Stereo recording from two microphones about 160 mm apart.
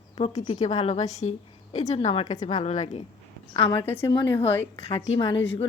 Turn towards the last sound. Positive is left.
turn(degrees=35)  # may be behind; listen again after turning